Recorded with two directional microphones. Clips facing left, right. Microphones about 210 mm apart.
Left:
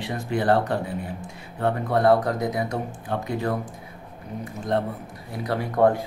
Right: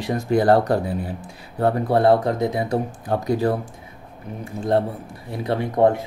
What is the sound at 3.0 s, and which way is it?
Speech, 40° right (ahead or behind).